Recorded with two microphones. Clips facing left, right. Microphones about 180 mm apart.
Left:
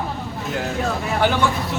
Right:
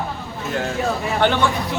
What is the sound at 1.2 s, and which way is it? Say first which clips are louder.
Speech: right 1 dB; 5° left (ahead or behind).